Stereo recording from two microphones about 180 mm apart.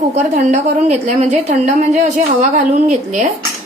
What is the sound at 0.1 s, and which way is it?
A woman's voice, 40° right (ahead or behind).